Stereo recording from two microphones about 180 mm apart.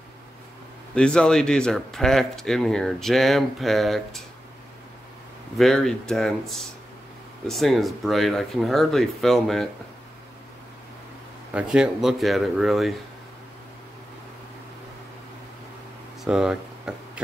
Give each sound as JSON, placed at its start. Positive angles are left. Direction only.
{"t": 0.9, "sound": "speech", "side_deg": 5}
{"t": 5.6, "sound": "speech", "side_deg": 0}
{"t": 11.5, "sound": "speech", "side_deg": -5}
{"t": 16.3, "sound": "a sound", "side_deg": -5}